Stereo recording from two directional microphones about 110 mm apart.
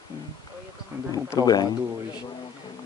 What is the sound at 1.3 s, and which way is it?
Speech, 35° left (ahead or behind).